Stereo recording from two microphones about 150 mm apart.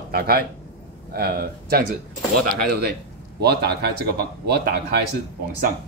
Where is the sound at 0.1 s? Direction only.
90° right.